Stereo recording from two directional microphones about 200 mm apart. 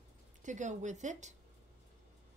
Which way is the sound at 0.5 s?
35° right (ahead or behind).